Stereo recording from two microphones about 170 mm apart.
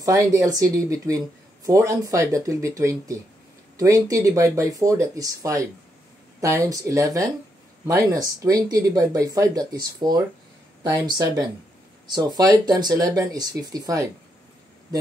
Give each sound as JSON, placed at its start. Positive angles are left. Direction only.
{"t": 0.0, "sound": "speech", "side_deg": -20}